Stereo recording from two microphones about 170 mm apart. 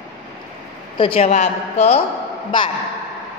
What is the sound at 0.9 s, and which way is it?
A woman's voice, 30° left (ahead or behind).